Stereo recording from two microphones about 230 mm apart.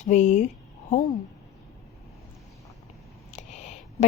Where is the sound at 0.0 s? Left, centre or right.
Left.